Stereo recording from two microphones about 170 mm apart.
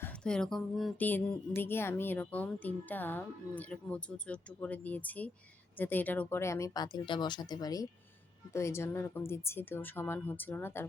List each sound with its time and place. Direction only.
0.0 s speech: 5° left (ahead or behind)